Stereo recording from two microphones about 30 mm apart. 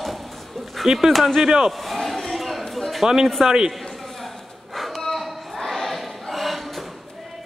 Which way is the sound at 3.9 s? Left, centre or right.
Centre.